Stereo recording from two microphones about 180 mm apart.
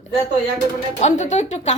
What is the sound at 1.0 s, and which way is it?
Speech, 40° left (ahead or behind).